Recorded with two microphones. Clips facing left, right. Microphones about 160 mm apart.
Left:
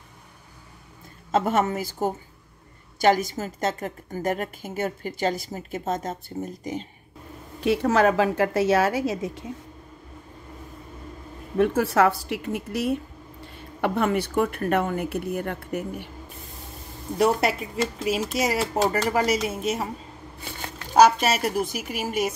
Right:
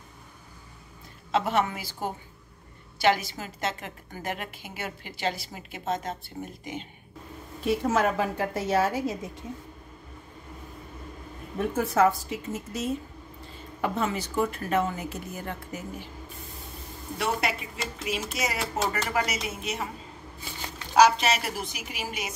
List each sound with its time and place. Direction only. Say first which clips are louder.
1.3 s a woman's voice: left 3 dB; 45° left (ahead or behind)
7.6 s a woman's voice: left 5 dB; 75° left (ahead or behind)
11.5 s a woman's voice: left 5 dB; 70° left (ahead or behind)
17.2 s speech: left 7 dB; 40° left (ahead or behind)